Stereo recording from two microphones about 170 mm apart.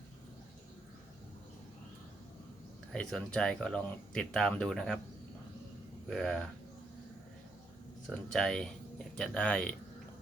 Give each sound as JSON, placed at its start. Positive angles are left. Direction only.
{"t": 2.9, "sound": "speech", "side_deg": 5}
{"t": 6.1, "sound": "speech", "side_deg": 5}
{"t": 8.1, "sound": "speech", "side_deg": 5}